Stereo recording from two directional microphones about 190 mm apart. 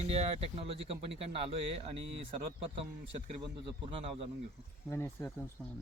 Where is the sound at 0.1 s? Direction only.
30° right (ahead or behind).